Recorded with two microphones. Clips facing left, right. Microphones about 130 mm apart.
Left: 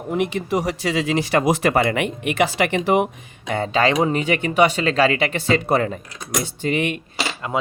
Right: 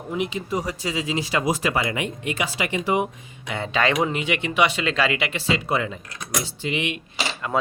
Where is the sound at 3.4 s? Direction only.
40° left (ahead or behind).